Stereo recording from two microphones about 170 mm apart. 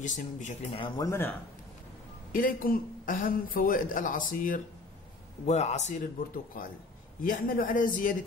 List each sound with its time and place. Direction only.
0.0 s speech: 45° left (ahead or behind)
0.7 s speech: 25° left (ahead or behind)
2.3 s speech: 55° left (ahead or behind)
5.5 s speech: 40° left (ahead or behind)